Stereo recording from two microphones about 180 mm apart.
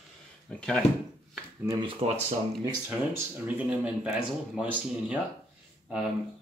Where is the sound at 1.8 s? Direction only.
35° right (ahead or behind).